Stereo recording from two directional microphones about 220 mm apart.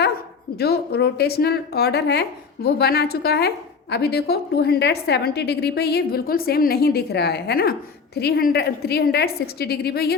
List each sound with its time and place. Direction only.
0.6 s a woman's voice: 45° left (ahead or behind)